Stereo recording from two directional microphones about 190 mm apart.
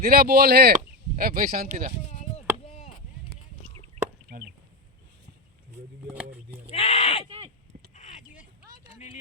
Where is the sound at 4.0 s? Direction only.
35° right (ahead or behind).